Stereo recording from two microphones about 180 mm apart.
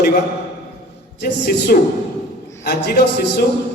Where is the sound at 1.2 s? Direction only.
60° left (ahead or behind).